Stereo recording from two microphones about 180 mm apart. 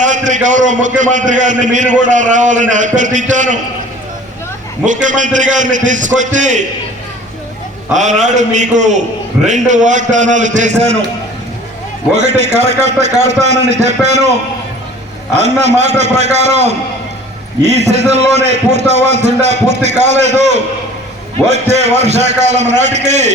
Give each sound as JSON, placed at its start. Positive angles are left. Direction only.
{"t": 0.0, "sound": "a man's voice", "side_deg": -45}
{"t": 4.9, "sound": "a man's voice", "side_deg": -45}
{"t": 7.9, "sound": "a man's voice", "side_deg": -40}
{"t": 12.5, "sound": "a man's voice", "side_deg": -40}
{"t": 15.4, "sound": "a man's voice", "side_deg": -40}